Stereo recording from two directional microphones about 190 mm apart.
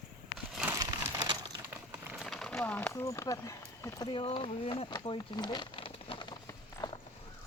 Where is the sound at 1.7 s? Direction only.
Centre (ahead or behind); by 6.9 s 20° left (ahead or behind).